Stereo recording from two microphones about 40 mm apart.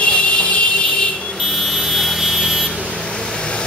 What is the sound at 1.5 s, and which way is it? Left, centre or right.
Vehicle, centre.